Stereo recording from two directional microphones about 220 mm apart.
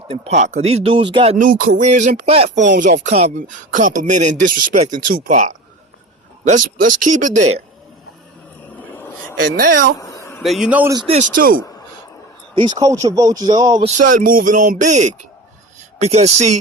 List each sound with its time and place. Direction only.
0.1 s speech: 30° right (ahead or behind)
10.0 s a sound: 15° left (ahead or behind)
10.4 s speech: centre (ahead or behind)
10.9 s speech: 25° right (ahead or behind)
11.3 s speech: 40° right (ahead or behind)
12.5 s speech: 20° right (ahead or behind)
13.9 s speech: 40° right (ahead or behind)